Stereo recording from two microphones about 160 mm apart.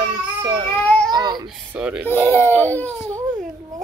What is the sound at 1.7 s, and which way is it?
Speech, 10° right (ahead or behind).